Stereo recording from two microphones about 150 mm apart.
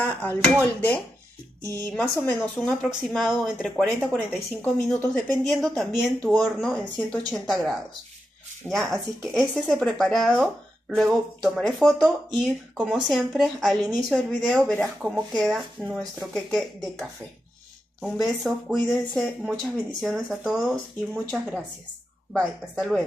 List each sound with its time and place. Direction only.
0.0 s speech: 10° left (ahead or behind)
1.6 s speech: 25° right (ahead or behind)
1.9 s speech: 10° left (ahead or behind)